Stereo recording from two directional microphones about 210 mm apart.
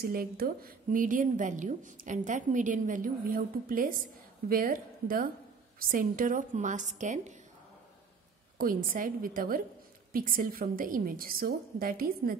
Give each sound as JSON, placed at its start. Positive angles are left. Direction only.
{"t": 0.0, "sound": "a woman's voice", "side_deg": -45}
{"t": 8.5, "sound": "a woman's voice", "side_deg": -40}